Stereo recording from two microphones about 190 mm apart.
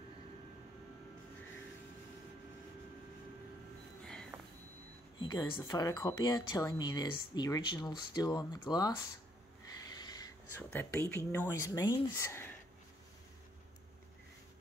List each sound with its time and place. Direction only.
4.0 s music: 5° left (ahead or behind)
5.2 s speech: 20° left (ahead or behind)
9.8 s wheeze: 20° left (ahead or behind)
10.7 s speech: 10° left (ahead or behind)